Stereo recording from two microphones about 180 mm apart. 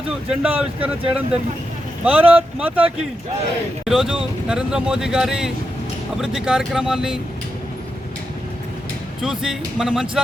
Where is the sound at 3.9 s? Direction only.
5° right (ahead or behind).